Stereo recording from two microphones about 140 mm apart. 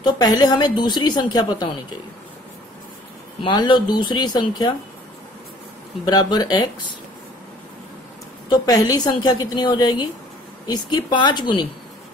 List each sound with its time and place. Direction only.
0.0 s a woman's voice: 30° left (ahead or behind)
3.4 s speech: 35° left (ahead or behind)
6.0 s a woman's voice: 30° left (ahead or behind)
8.5 s a woman's voice: 25° left (ahead or behind)